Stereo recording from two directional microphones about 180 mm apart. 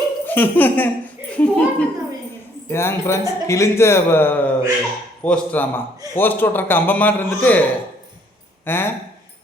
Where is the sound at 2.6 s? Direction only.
15° left (ahead or behind).